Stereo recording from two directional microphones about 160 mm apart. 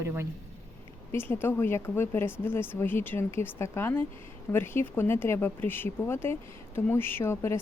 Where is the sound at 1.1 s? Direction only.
15° left (ahead or behind).